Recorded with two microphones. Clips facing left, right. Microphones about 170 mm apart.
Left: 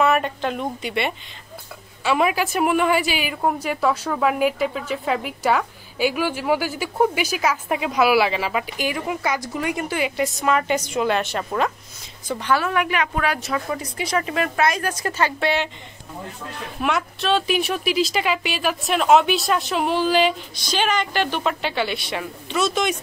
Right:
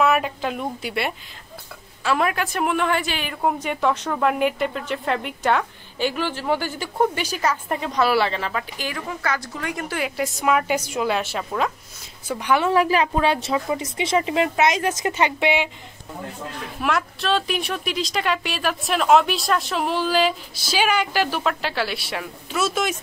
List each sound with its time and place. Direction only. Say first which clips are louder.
0.0 s speech: left 1 dB; 5° right (ahead or behind)
12.3 s a woman's voice: right 1 dB; 15° right (ahead or behind)
12.6 s a woman's voice: right 4 dB; 30° right (ahead or behind); by 15.7 s 15° right (ahead or behind)
16.8 s speech: left 1 dB; centre (ahead or behind)